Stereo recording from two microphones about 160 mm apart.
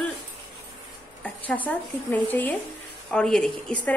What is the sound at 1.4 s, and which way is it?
A woman's voice, 10° left (ahead or behind).